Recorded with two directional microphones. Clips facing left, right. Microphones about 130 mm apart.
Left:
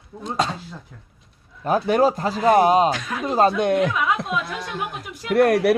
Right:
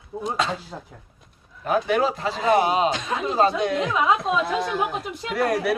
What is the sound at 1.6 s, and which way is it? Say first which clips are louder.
A man's voice: left 3 dB; 40° left (ahead or behind).